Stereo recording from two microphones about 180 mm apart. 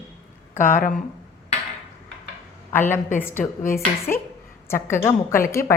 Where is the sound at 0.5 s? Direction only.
45° left (ahead or behind).